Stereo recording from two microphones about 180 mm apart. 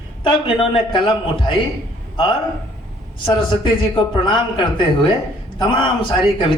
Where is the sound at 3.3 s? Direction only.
30° left (ahead or behind).